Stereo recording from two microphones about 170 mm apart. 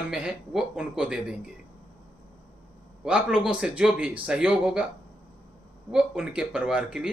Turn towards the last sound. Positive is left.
turn(degrees=-5)  # may be behind; listen again after turning